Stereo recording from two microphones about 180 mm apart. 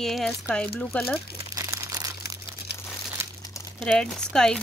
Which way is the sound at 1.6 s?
20° right (ahead or behind).